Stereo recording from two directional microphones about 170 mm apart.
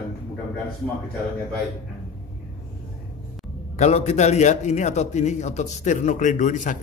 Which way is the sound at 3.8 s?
40° left (ahead or behind).